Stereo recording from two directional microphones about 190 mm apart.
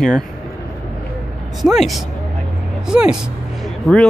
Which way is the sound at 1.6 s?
Centre (ahead or behind).